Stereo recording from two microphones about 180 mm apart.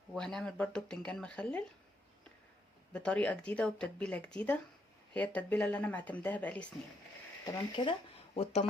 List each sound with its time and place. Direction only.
0.1 s speech: 5° left (ahead or behind)
2.9 s speech: 5° left (ahead or behind)
7.4 s speech: 20° left (ahead or behind)